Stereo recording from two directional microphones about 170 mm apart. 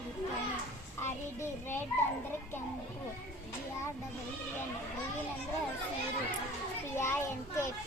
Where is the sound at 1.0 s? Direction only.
15° left (ahead or behind).